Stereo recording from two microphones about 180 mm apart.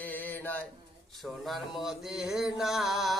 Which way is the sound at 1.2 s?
Centre (ahead or behind).